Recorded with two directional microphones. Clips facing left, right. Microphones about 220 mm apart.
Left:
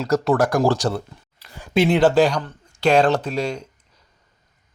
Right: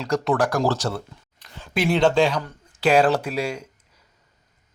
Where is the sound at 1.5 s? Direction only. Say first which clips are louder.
Left 2 dB; 10° left (ahead or behind).